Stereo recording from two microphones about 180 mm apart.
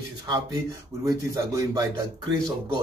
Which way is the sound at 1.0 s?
20° right (ahead or behind).